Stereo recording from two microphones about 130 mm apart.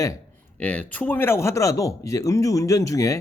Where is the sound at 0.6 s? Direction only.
10° left (ahead or behind).